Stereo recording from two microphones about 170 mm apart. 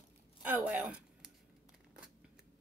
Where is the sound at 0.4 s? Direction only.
10° right (ahead or behind).